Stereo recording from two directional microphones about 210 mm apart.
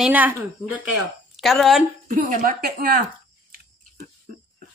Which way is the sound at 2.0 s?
40° right (ahead or behind).